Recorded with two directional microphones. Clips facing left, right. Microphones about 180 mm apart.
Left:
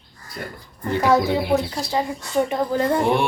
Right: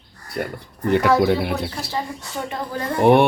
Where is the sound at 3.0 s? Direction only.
60° right (ahead or behind).